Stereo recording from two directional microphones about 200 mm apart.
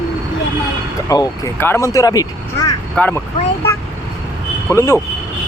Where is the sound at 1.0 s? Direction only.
15° left (ahead or behind).